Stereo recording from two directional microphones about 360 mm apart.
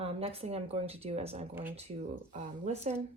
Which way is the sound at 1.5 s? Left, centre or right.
Centre.